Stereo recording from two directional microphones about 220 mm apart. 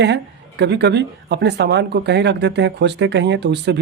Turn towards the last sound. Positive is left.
turn(degrees=-50)  # may be behind; listen again after turning